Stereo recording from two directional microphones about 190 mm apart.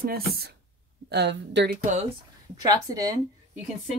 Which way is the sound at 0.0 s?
55° right (ahead or behind).